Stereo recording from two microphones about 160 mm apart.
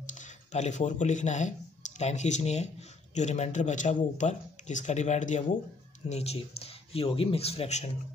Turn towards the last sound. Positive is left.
turn(degrees=40)  # may be behind; listen again after turning